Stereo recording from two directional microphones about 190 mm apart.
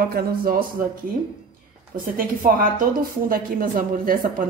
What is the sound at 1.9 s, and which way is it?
A woman's voice, 45° right (ahead or behind).